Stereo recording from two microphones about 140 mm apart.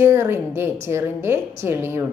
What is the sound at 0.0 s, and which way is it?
A woman's voice, 20° right (ahead or behind).